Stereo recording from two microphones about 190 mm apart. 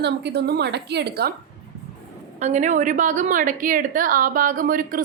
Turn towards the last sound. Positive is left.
turn(degrees=-45)  # may be behind; listen again after turning